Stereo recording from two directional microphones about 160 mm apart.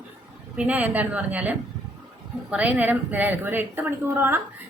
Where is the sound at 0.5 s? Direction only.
10° right (ahead or behind).